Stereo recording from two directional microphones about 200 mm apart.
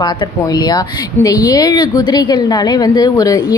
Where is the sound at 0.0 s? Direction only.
20° left (ahead or behind).